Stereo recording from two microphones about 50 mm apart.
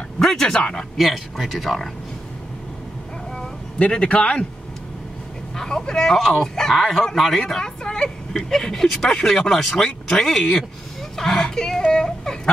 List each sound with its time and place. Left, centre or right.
0.2 s speech: centre
0.9 s speech: centre
3.7 s a man's voice: left
5.6 s speech: centre
9.8 s speech: centre
10.2 s speech: centre
11.9 s a sound: centre